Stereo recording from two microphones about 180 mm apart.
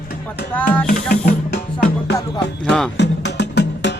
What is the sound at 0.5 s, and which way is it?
Music, 10° left (ahead or behind).